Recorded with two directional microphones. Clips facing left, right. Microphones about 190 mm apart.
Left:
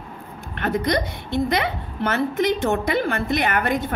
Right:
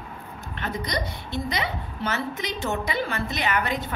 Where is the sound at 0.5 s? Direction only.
55° left (ahead or behind).